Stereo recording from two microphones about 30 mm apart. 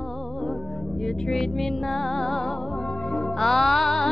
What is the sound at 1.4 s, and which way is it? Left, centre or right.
Music, centre.